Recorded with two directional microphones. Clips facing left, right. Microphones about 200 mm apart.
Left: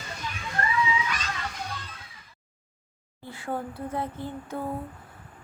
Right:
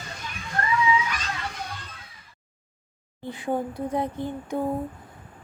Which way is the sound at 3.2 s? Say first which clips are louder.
Right 5 dB; 15° right (ahead or behind).